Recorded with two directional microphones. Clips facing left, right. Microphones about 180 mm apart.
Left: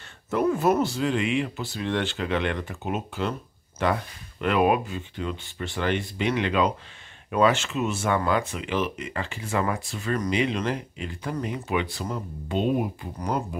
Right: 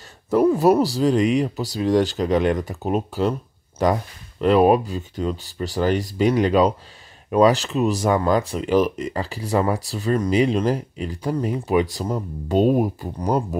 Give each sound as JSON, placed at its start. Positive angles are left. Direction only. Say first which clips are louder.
{"t": 0.6, "sound": "speech", "louder": "right 6 dB", "side_deg": -35}